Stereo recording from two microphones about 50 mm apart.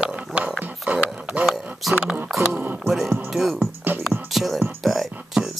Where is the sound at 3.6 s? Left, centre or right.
Right.